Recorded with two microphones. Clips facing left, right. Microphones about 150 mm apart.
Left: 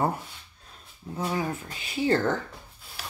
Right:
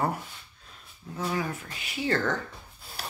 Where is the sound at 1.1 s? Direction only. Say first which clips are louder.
Left 2 dB; 25° left (ahead or behind).